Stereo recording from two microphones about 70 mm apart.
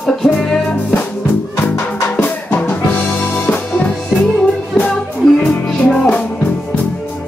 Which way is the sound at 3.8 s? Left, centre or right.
Centre.